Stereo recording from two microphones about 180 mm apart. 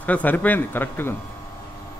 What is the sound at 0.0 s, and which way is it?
Speech, 10° left (ahead or behind).